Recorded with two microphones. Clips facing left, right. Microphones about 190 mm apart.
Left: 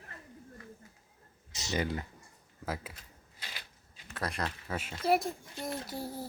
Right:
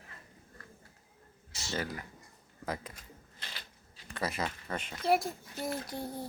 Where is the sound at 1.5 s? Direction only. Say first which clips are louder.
Left 4 dB; 20° left (ahead or behind).